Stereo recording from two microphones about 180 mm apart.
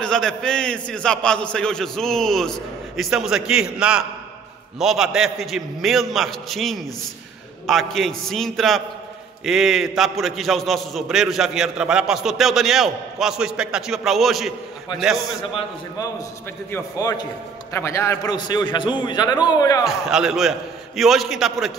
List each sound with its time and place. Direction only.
0.0 s a man's voice: 5° left (ahead or behind)
16.7 s a man's voice: 20° left (ahead or behind)
19.8 s a man's voice: centre (ahead or behind)